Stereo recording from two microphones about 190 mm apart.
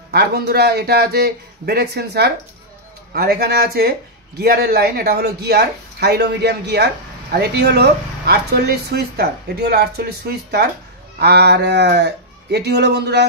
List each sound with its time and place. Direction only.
0.1 s speech: 55° right (ahead or behind)